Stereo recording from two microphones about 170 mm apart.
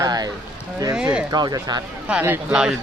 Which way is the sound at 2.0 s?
10° right (ahead or behind).